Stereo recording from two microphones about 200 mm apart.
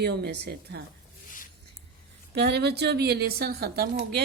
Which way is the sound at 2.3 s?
55° right (ahead or behind).